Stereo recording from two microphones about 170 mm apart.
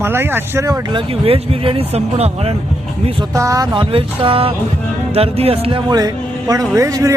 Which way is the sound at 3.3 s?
20° right (ahead or behind).